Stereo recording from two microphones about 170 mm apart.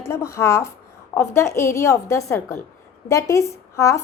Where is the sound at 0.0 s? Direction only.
15° left (ahead or behind).